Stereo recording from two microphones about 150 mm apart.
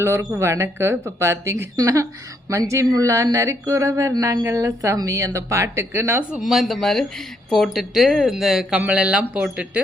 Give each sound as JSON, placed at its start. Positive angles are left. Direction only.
{"t": 0.0, "sound": "speech", "side_deg": -15}
{"t": 6.4, "sound": "speech", "side_deg": 0}